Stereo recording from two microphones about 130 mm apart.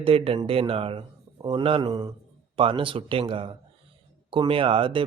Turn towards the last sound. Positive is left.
turn(degrees=-40)  # may be behind; listen again after turning